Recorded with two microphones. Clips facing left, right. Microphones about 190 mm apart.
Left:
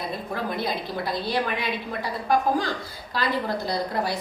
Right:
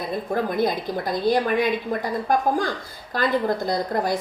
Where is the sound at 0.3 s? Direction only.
50° right (ahead or behind).